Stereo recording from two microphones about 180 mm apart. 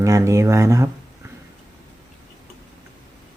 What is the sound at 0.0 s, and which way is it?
Speech, 15° right (ahead or behind).